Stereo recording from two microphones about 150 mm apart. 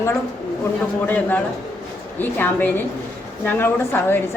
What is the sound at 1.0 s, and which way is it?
Speech, 10° left (ahead or behind).